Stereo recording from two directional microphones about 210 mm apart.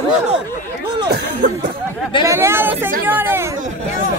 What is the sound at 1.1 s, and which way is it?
Music, 45° right (ahead or behind).